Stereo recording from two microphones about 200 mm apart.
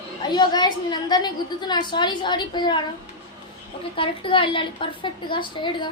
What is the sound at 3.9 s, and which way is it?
A woman's voice, 25° left (ahead or behind).